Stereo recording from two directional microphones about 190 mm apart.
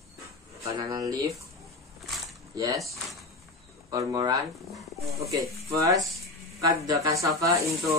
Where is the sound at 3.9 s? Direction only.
20° right (ahead or behind).